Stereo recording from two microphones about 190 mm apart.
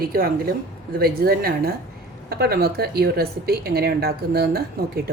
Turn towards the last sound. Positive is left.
turn(degrees=-55)  # may be behind; listen again after turning